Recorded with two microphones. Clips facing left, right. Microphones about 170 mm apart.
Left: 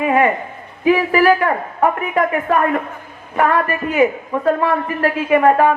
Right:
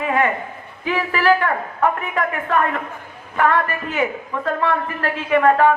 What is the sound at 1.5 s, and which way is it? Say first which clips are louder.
Speech: left 3 dB; 25° left (ahead or behind).